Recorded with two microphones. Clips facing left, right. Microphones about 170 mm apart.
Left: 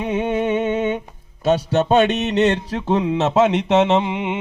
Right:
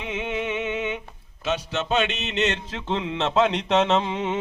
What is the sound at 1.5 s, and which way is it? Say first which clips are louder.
Mantra: left 9 dB; 40° left (ahead or behind).